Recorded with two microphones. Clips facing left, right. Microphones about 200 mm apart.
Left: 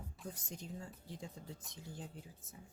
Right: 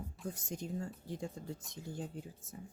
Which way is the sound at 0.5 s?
50° right (ahead or behind).